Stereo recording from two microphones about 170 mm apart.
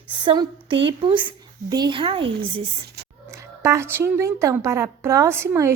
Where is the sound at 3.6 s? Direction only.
15° right (ahead or behind).